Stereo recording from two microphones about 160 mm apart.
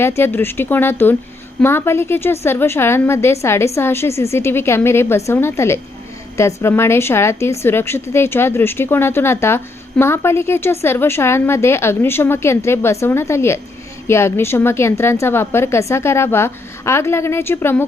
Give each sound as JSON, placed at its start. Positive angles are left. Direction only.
{"t": 0.0, "sound": "a woman's voice", "side_deg": 15}